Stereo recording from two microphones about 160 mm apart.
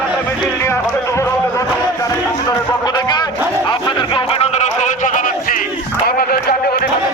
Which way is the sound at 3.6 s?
30° left (ahead or behind).